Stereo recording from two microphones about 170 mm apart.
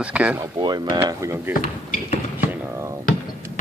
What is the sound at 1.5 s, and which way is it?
Speech, 50° left (ahead or behind).